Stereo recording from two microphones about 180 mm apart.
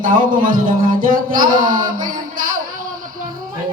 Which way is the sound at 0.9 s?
50° right (ahead or behind).